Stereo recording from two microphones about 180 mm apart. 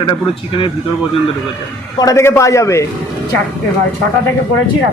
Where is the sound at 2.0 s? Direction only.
15° left (ahead or behind).